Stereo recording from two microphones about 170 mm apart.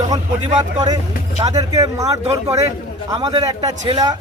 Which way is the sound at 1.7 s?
20° right (ahead or behind).